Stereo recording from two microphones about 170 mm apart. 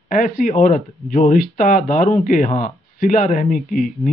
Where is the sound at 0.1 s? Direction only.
50° left (ahead or behind).